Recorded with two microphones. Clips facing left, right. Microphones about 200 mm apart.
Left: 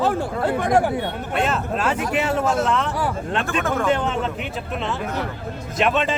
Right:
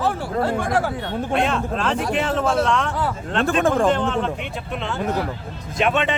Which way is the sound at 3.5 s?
35° right (ahead or behind).